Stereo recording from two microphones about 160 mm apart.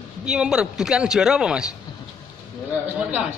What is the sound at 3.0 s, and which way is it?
Speech, 5° right (ahead or behind).